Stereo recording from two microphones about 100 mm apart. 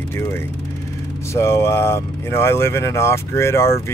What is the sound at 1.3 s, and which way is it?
Speech, 25° left (ahead or behind).